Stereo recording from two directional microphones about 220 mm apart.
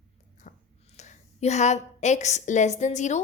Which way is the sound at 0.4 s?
35° left (ahead or behind).